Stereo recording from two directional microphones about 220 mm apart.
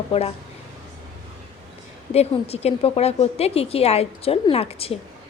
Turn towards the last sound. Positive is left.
turn(degrees=25)  # may be behind; listen again after turning